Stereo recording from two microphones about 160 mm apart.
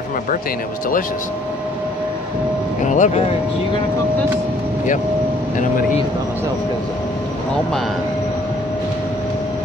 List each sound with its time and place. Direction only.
2.8 s speech: 50° left (ahead or behind)